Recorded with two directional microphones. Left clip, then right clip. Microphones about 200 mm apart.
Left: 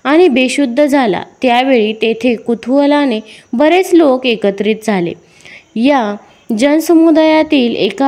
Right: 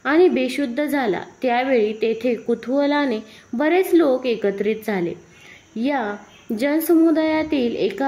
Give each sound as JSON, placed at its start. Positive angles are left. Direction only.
{"t": 0.0, "sound": "a woman's voice", "side_deg": 35}